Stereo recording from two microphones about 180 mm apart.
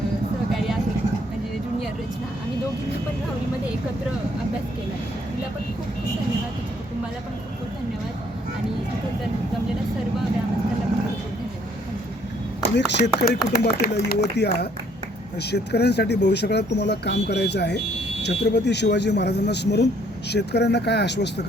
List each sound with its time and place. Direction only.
12.7 s speech: 65° left (ahead or behind)
14.1 s speech: 65° left (ahead or behind)